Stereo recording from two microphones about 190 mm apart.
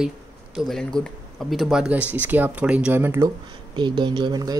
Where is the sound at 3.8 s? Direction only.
25° right (ahead or behind).